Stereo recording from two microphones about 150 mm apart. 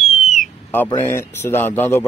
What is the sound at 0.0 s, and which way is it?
Owl, centre (ahead or behind).